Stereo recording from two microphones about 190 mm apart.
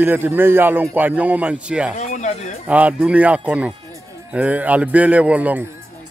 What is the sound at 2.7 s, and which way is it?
A man's voice, 10° right (ahead or behind).